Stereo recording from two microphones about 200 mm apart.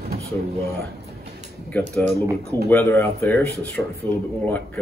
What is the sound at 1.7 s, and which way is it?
Speech, 10° left (ahead or behind).